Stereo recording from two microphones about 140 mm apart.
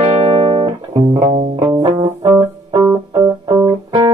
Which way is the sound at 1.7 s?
25° right (ahead or behind).